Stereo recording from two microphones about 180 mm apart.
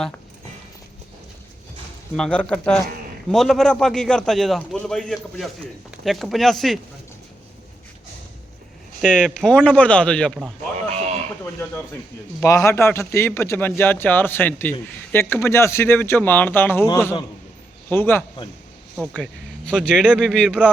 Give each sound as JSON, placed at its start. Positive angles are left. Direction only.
{"t": 2.1, "sound": "a man's voice", "side_deg": 5}
{"t": 9.0, "sound": "a man's voice", "side_deg": 5}
{"t": 10.9, "sound": "a sound", "side_deg": -35}
{"t": 12.4, "sound": "a man's voice", "side_deg": 15}